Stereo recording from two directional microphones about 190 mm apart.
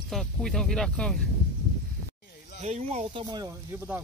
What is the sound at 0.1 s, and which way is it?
Speech, centre (ahead or behind).